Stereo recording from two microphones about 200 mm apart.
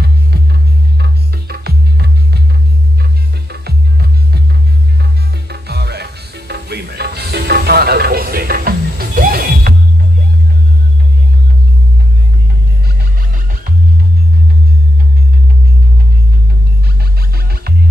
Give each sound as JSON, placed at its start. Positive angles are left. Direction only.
{"t": 0.0, "sound": "music", "side_deg": -55}
{"t": 5.5, "sound": "music", "side_deg": -55}